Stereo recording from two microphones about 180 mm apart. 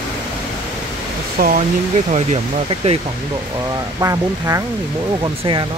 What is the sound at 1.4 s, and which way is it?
Speech, 50° right (ahead or behind).